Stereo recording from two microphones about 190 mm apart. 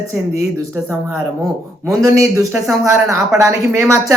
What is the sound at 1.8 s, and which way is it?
Speech, 15° right (ahead or behind).